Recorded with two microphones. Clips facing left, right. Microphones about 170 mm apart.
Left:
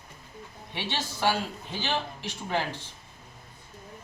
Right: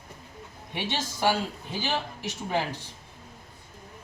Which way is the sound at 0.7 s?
15° right (ahead or behind).